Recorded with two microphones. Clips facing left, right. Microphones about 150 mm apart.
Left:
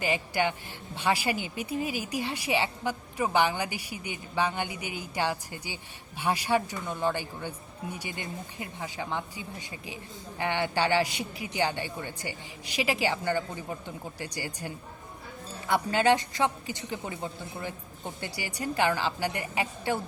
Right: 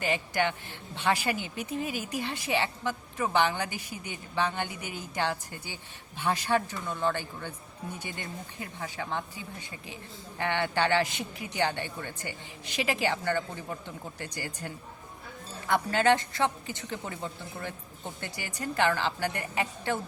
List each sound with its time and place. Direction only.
0.0 s a woman's voice: 10° left (ahead or behind)
15.7 s a woman's voice: 15° left (ahead or behind)